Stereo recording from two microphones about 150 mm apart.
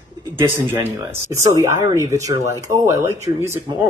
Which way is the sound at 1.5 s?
25° right (ahead or behind).